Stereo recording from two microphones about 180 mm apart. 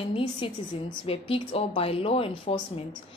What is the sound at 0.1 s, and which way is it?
A woman's voice, 30° left (ahead or behind).